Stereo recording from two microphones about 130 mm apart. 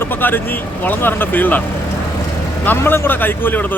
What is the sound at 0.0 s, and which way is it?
A man's voice, 15° left (ahead or behind).